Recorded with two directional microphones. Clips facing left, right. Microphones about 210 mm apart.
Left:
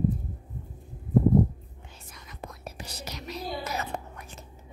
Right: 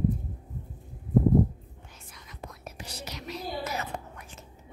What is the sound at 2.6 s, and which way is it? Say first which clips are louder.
Whispering: even; 40° left (ahead or behind).